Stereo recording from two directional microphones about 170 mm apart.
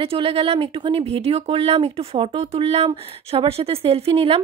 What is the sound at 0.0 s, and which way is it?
Speech, 35° right (ahead or behind).